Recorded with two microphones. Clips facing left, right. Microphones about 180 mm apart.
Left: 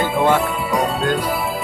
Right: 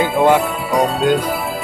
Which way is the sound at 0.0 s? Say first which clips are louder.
Right 3 dB; 15° right (ahead or behind).